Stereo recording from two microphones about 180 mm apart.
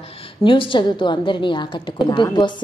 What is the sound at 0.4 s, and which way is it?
A woman's voice, 30° left (ahead or behind).